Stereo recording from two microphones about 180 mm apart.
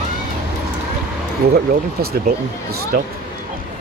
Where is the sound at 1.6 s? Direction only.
60° right (ahead or behind).